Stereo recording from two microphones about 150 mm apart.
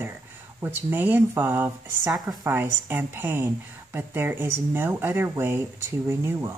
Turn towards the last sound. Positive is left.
turn(degrees=-15)  # may be behind; listen again after turning